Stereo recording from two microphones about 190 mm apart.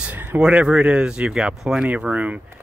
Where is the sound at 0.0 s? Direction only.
10° right (ahead or behind).